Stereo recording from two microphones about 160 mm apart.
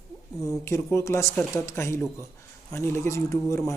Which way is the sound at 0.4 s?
15° left (ahead or behind).